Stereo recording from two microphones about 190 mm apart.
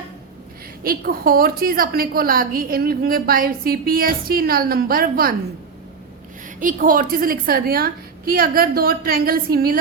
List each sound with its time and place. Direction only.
0.9 s a woman's voice: 50° right (ahead or behind)
6.6 s a woman's voice: 45° right (ahead or behind)